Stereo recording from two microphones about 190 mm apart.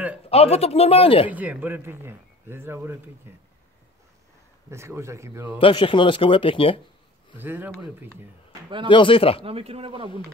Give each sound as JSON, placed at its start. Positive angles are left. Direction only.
{"t": 0.3, "sound": "speech", "side_deg": 30}
{"t": 1.3, "sound": "speech", "side_deg": -10}
{"t": 4.6, "sound": "speech", "side_deg": -15}
{"t": 5.6, "sound": "speech", "side_deg": 25}
{"t": 7.3, "sound": "speech", "side_deg": -10}
{"t": 8.8, "sound": "speech", "side_deg": 25}
{"t": 9.4, "sound": "speech", "side_deg": -30}